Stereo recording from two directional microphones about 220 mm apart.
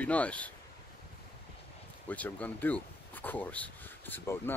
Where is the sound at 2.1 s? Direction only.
5° left (ahead or behind).